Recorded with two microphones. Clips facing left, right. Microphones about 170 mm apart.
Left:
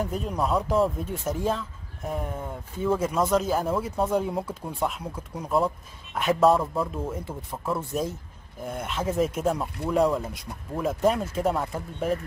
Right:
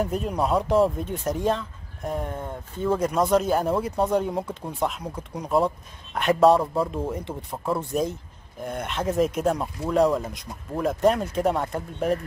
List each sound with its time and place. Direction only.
0.0 s speech: centre (ahead or behind)